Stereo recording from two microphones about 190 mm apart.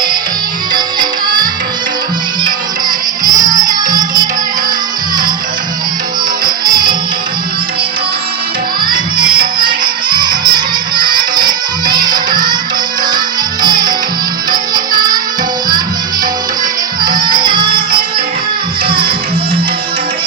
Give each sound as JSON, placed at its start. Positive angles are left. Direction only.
{"t": 0.7, "sound": "music", "side_deg": -20}
{"t": 3.3, "sound": "music", "side_deg": -20}
{"t": 6.4, "sound": "music", "side_deg": -25}
{"t": 9.1, "sound": "music", "side_deg": -25}
{"t": 17.0, "sound": "music", "side_deg": -25}
{"t": 18.9, "sound": "music", "side_deg": -25}